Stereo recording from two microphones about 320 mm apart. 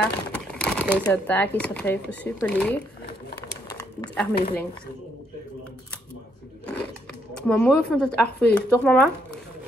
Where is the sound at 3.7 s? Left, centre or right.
Centre.